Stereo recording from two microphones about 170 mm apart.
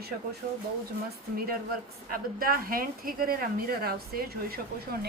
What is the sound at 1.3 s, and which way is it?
Speech, 60° right (ahead or behind).